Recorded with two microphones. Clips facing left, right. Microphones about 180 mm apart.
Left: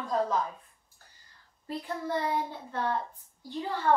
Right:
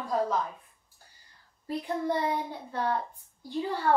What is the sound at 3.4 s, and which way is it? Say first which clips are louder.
Speech: right 3 dB; 15° right (ahead or behind).